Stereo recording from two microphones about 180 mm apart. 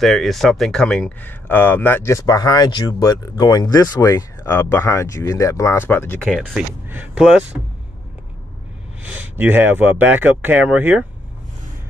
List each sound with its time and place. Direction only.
0.0 s speech: centre (ahead or behind)
6.3 s speech: 5° right (ahead or behind)
9.0 s speech: 10° right (ahead or behind)